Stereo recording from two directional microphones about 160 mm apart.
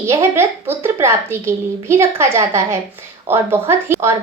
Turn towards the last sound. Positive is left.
turn(degrees=-15)  # may be behind; listen again after turning